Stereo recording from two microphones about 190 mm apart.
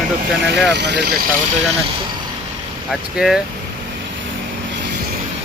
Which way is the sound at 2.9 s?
Centre (ahead or behind).